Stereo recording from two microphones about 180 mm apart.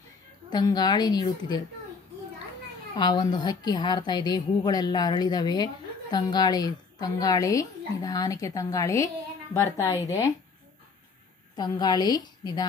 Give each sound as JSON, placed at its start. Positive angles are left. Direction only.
{"t": 0.5, "sound": "a woman's voice", "side_deg": 20}
{"t": 3.0, "sound": "a woman's voice", "side_deg": 25}
{"t": 11.5, "sound": "a woman's voice", "side_deg": 20}